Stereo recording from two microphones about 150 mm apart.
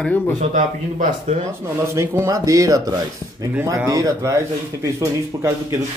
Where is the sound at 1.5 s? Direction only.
20° right (ahead or behind).